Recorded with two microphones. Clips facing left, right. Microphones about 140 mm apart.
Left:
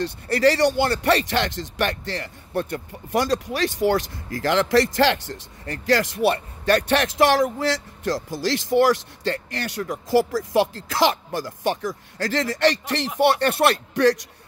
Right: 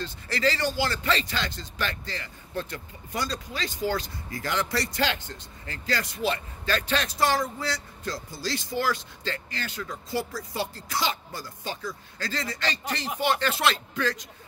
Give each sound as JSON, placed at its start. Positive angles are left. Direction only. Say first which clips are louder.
{"t": 0.0, "sound": "speech", "louder": "left 8 dB", "side_deg": 65}
{"t": 6.9, "sound": "speech", "louder": "left 5 dB", "side_deg": 90}